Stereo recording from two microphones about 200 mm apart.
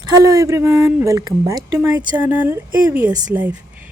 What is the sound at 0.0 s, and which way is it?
Speech, 15° right (ahead or behind).